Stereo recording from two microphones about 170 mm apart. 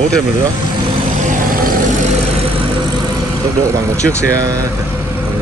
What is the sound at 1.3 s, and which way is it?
Vehicle, 55° right (ahead or behind).